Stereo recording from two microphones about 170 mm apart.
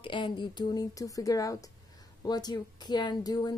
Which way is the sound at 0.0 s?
30° left (ahead or behind).